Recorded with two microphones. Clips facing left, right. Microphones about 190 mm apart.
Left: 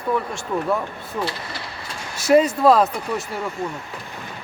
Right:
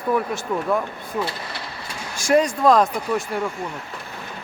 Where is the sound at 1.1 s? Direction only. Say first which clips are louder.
Even; 5° right (ahead or behind).